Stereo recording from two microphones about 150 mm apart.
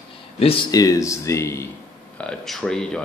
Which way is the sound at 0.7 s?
25° left (ahead or behind).